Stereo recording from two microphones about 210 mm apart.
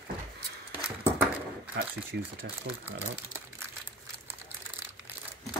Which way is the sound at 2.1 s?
55° right (ahead or behind).